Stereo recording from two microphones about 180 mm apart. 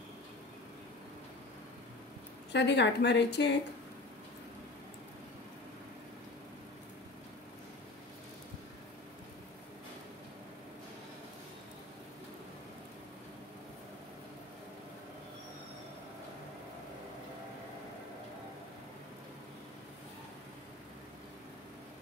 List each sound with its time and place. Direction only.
2.5 s speech: 70° left (ahead or behind)